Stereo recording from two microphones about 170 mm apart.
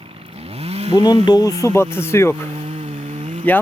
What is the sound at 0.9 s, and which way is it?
Speech, 25° left (ahead or behind).